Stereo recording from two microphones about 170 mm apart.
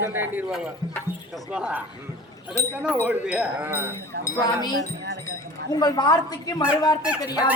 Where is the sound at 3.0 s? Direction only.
10° right (ahead or behind).